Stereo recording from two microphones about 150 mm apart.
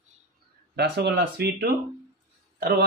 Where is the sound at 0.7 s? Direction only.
90° right.